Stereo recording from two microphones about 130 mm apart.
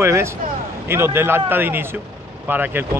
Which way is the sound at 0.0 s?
20° right (ahead or behind).